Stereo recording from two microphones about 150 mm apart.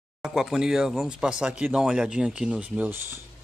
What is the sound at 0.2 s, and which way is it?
Speech, 5° right (ahead or behind).